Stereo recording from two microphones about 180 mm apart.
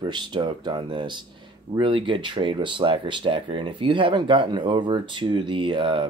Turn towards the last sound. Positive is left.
turn(degrees=-30)  # may be behind; listen again after turning